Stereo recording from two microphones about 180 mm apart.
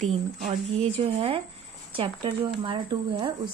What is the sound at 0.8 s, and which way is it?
Speech, 30° right (ahead or behind).